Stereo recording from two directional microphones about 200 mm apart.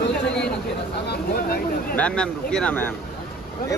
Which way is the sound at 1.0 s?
55° left (ahead or behind).